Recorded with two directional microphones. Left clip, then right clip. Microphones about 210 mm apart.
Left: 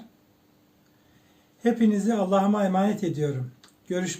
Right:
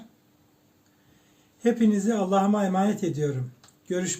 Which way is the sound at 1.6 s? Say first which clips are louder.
Even; centre (ahead or behind).